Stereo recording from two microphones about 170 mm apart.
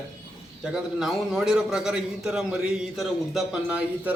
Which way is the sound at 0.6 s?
Centre (ahead or behind).